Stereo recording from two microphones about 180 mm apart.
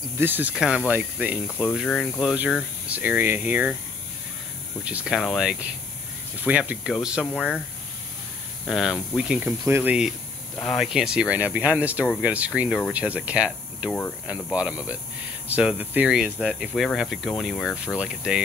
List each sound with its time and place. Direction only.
0.2 s speech: 10° right (ahead or behind)
4.8 s speech: 5° right (ahead or behind)
8.6 s speech: centre (ahead or behind)
13.8 s speech: 10° left (ahead or behind)
14.2 s speech: 5° right (ahead or behind)